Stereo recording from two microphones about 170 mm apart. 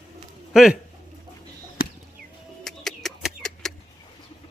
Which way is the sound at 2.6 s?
Centre (ahead or behind).